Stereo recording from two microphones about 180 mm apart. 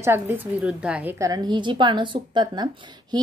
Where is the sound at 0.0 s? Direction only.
10° right (ahead or behind).